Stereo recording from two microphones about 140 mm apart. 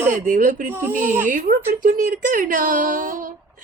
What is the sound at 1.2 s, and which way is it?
Speech, 75° right (ahead or behind).